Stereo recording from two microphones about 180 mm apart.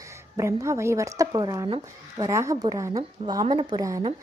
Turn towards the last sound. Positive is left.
turn(degrees=-20)  # may be behind; listen again after turning